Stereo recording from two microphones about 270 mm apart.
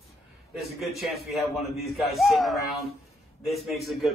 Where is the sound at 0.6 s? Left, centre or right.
Centre.